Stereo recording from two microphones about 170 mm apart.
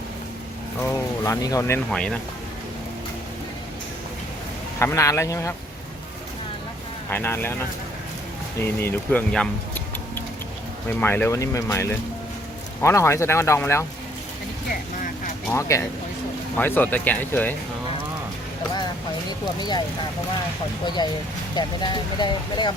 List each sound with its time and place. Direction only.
1.2 s speech: 20° left (ahead or behind)
1.9 s speech: 5° left (ahead or behind)
4.8 s speech: 15° left (ahead or behind)
7.1 s speech: 10° left (ahead or behind)
8.6 s speech: 15° left (ahead or behind)
15.4 s speech: 15° left (ahead or behind)
19.5 s speech: 25° left (ahead or behind)
20.8 s speech: 25° left (ahead or behind)